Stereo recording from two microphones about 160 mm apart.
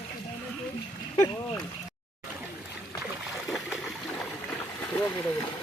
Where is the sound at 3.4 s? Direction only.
Centre (ahead or behind).